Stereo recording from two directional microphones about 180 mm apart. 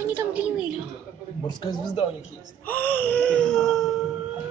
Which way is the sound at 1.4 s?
25° left (ahead or behind).